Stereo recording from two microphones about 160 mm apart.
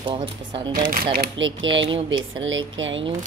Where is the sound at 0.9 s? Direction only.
60° right (ahead or behind).